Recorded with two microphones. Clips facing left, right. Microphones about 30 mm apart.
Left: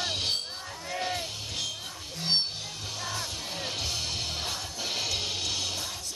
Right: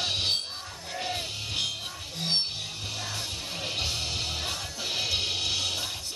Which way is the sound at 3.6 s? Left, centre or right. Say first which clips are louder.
Right 2 dB; right.